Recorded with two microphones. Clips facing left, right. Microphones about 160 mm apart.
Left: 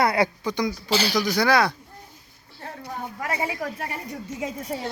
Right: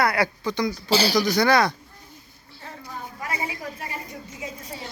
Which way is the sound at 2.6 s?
60° left (ahead or behind).